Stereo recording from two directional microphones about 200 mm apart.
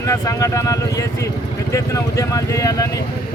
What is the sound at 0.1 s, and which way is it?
Speech, 15° left (ahead or behind).